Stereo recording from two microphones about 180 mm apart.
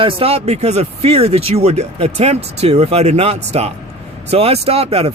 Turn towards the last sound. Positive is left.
turn(degrees=-35)  # may be behind; listen again after turning